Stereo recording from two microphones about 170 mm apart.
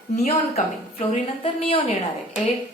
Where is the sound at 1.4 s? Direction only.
35° left (ahead or behind).